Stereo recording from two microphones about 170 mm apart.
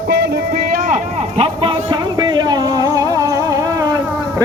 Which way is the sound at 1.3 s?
35° right (ahead or behind).